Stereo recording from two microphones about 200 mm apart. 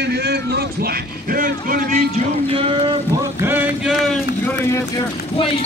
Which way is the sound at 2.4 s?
30° right (ahead or behind).